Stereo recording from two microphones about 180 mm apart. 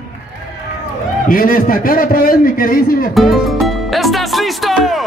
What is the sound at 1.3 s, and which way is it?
A man's voice, 50° left (ahead or behind).